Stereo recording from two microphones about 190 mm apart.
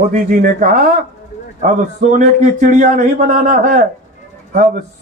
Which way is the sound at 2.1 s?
45° right (ahead or behind).